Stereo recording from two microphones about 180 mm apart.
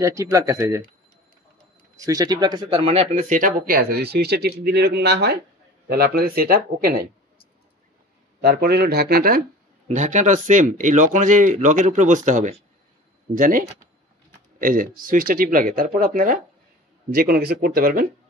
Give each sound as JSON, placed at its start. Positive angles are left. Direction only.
{"t": 0.0, "sound": "speech", "side_deg": -15}
{"t": 2.0, "sound": "speech", "side_deg": -20}
{"t": 8.4, "sound": "speech", "side_deg": -65}
{"t": 9.8, "sound": "speech", "side_deg": -40}